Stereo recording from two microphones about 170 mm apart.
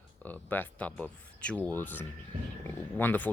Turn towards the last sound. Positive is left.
turn(degrees=10)  # may be behind; listen again after turning